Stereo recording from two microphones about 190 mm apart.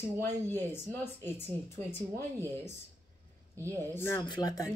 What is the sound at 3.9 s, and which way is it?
Speech, 15° left (ahead or behind).